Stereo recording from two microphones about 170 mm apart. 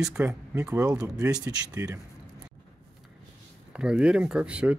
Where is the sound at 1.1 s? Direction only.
5° right (ahead or behind).